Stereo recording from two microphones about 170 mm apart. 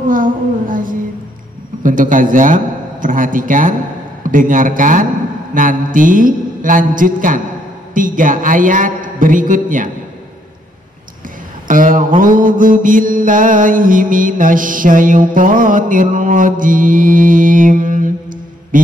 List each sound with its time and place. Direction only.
0.1 s a sound: 55° right (ahead or behind)
1.8 s a man's voice: 50° right (ahead or behind)
4.2 s mantra: 50° right (ahead or behind)
11.6 s speech: 50° right (ahead or behind)
12.2 s mantra: 55° right (ahead or behind)